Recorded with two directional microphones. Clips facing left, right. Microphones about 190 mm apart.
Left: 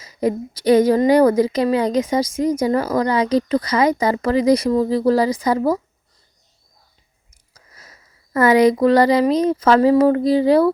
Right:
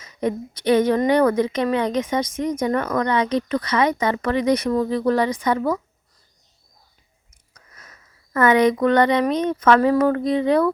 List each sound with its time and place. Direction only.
0.0 s a woman's voice: 35° left (ahead or behind)
7.5 s speech: 30° left (ahead or behind)